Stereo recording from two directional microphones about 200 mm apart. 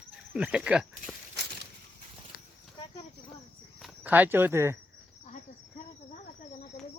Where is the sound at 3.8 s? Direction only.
5° right (ahead or behind).